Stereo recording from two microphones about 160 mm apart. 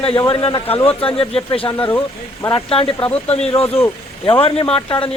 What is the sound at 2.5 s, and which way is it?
Speech, 35° left (ahead or behind).